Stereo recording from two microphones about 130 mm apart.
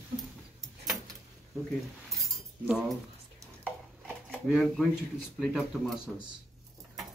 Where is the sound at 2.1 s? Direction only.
Centre (ahead or behind).